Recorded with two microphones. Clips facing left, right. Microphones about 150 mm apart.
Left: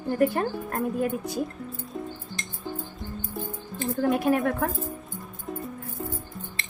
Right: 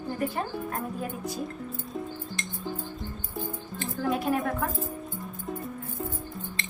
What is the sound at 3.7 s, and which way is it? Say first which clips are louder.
Speech: left 5 dB; 50° left (ahead or behind).